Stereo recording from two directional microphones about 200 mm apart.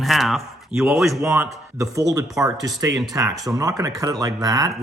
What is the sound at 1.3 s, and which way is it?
Speech, 15° right (ahead or behind).